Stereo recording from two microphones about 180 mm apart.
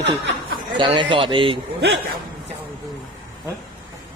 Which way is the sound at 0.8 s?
25° right (ahead or behind).